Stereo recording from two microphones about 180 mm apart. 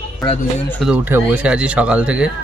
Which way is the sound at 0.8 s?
10° right (ahead or behind).